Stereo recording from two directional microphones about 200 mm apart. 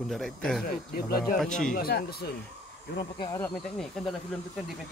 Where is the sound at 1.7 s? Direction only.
50° left (ahead or behind).